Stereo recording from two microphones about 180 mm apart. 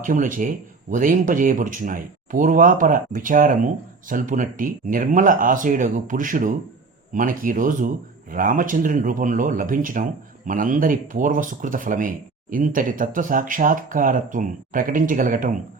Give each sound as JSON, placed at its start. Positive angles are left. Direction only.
{"t": 0.0, "sound": "speech", "side_deg": -50}